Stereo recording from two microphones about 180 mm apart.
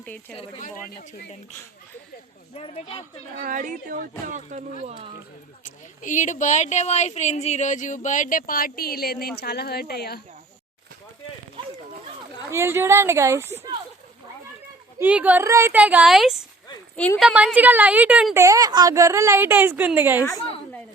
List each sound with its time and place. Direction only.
0.0 s speech: 5° left (ahead or behind)
0.6 s speech: 60° left (ahead or behind)
2.6 s speech: 35° left (ahead or behind)
3.3 s a woman's voice: 50° right (ahead or behind)
4.9 s speech: 30° right (ahead or behind)
5.6 s speech: 45° left (ahead or behind); by 10.2 s 60° left (ahead or behind)
12.5 s a woman's voice: 15° right (ahead or behind)
14.9 s a woman's voice: 10° right (ahead or behind)
18.3 s a woman's voice: 20° right (ahead or behind)